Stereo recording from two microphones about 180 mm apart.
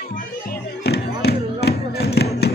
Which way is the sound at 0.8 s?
65° left (ahead or behind).